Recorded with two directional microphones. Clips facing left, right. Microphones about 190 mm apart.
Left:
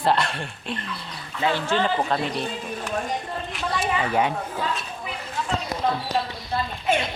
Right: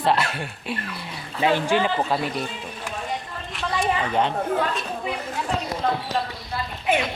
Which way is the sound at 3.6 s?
5° left (ahead or behind).